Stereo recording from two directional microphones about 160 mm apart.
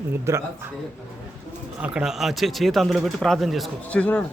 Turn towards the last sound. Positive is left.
turn(degrees=10)  # may be behind; listen again after turning